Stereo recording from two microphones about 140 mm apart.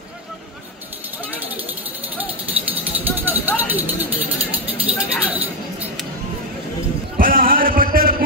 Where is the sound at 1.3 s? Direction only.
10° right (ahead or behind).